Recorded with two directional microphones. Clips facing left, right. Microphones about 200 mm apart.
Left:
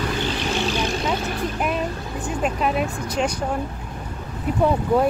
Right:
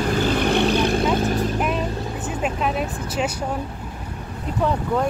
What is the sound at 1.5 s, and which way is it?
Vehicle, centre (ahead or behind).